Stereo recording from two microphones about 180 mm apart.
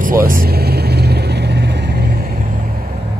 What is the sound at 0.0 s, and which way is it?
Vehicle, 50° right (ahead or behind).